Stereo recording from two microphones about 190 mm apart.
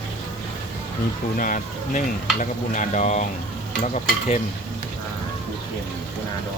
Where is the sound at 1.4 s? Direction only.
45° left (ahead or behind).